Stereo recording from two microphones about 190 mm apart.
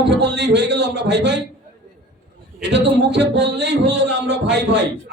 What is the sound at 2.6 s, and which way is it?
A man's voice, 65° right (ahead or behind).